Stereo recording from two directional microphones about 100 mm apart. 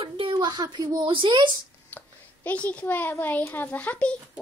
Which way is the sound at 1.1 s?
55° right (ahead or behind).